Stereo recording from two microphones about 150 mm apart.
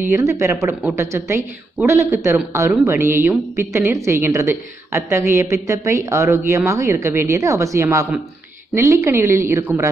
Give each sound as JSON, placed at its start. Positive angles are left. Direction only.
{"t": 0.1, "sound": "a woman's voice", "side_deg": -20}